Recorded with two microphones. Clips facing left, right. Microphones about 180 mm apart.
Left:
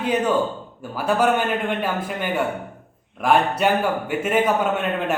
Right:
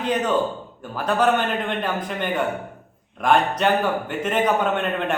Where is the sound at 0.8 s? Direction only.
10° left (ahead or behind).